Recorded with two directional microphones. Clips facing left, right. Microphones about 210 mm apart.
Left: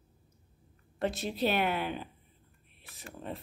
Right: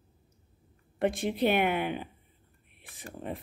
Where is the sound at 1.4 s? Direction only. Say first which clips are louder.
Right 3 dB; 15° right (ahead or behind).